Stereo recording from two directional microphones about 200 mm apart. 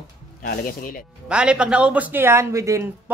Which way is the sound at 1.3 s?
5° right (ahead or behind).